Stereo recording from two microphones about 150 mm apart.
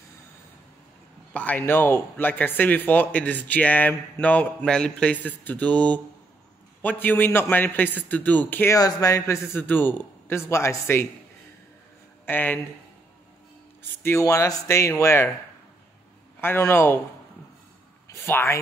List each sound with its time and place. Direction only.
1.3 s speech: 10° left (ahead or behind)
8.7 s speech: 20° left (ahead or behind)
12.3 s speech: 10° left (ahead or behind)
14.0 s speech: 20° left (ahead or behind)
16.3 s speech: 15° left (ahead or behind)
18.0 s speech: 15° left (ahead or behind)